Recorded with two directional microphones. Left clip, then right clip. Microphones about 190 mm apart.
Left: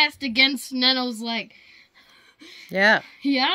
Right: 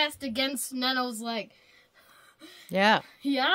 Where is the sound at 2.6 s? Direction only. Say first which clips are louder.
Left 5 dB; 20° right (ahead or behind).